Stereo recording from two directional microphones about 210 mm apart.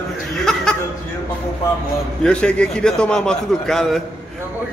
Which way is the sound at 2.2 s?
5° left (ahead or behind).